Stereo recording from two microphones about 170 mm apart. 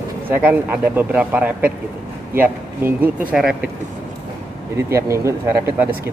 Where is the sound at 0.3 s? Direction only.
10° right (ahead or behind).